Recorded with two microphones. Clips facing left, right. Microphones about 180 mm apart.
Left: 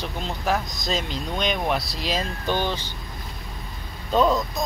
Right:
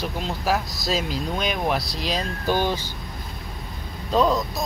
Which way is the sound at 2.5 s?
10° right (ahead or behind).